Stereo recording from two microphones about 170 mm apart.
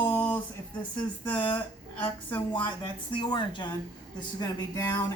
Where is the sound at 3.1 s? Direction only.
30° left (ahead or behind).